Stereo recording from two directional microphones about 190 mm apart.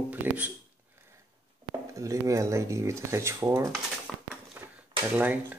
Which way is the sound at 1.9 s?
15° right (ahead or behind).